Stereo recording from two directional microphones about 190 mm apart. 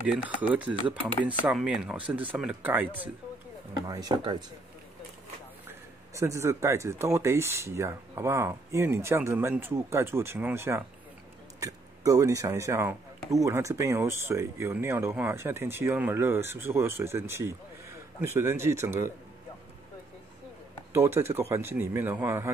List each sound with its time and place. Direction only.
0.1 s speech: 5° right (ahead or behind)
3.7 s speech: 20° right (ahead or behind)
5.7 s speech: 15° right (ahead or behind)
20.9 s speech: 15° right (ahead or behind)